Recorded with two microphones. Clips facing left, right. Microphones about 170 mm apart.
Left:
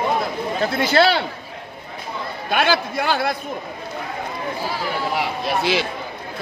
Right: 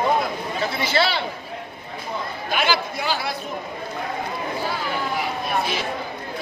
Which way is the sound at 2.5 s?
55° left (ahead or behind).